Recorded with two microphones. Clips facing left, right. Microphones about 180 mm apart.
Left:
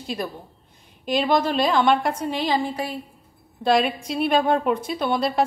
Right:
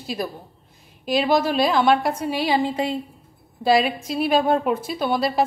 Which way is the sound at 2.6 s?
20° right (ahead or behind).